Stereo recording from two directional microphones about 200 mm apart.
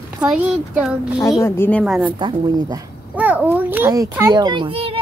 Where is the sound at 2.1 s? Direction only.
25° right (ahead or behind).